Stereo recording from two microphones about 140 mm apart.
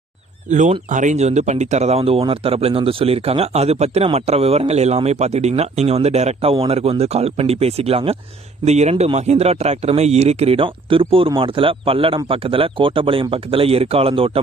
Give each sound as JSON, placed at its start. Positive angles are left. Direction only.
{"t": 0.9, "sound": "speech", "side_deg": -60}